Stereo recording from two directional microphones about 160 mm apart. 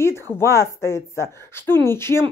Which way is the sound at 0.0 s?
15° left (ahead or behind).